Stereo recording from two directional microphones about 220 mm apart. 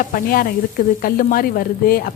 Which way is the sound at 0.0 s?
40° left (ahead or behind).